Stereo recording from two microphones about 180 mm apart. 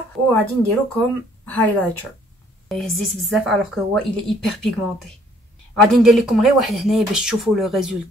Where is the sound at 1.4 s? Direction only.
10° left (ahead or behind).